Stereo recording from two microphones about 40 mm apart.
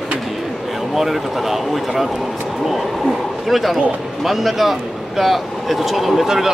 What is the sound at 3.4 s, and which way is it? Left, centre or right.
Speech, centre.